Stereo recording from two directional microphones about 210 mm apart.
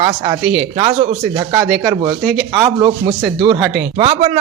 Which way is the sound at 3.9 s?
25° right (ahead or behind).